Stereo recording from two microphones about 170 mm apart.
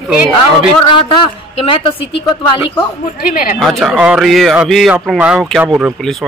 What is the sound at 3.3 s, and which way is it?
Speech, 55° left (ahead or behind).